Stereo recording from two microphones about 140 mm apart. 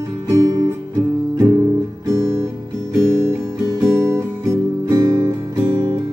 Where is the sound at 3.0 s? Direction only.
20° right (ahead or behind).